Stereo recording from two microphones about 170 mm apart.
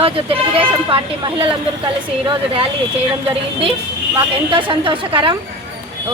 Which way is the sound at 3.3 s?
30° right (ahead or behind).